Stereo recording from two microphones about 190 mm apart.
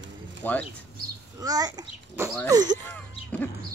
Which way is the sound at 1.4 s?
20° right (ahead or behind).